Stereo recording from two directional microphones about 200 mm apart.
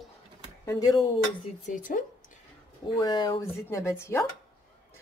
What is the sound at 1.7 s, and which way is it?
Speech, 40° left (ahead or behind).